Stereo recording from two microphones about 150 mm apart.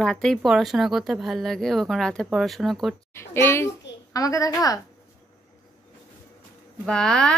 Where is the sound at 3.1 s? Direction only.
15° left (ahead or behind).